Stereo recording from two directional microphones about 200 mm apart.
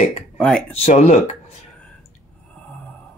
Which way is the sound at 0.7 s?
30° left (ahead or behind).